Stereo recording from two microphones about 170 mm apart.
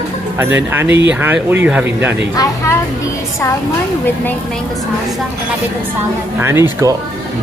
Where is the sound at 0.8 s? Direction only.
90° right.